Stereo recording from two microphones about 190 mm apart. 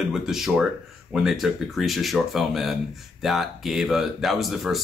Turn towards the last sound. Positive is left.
turn(degrees=0)  # may be behind; listen again after turning